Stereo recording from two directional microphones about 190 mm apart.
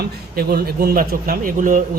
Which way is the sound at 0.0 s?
55° right (ahead or behind).